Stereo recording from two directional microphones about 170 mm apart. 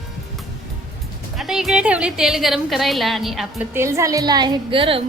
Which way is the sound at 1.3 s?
Centre (ahead or behind).